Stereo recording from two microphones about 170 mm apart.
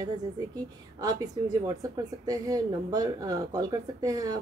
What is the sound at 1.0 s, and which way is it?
A woman's voice, 25° right (ahead or behind).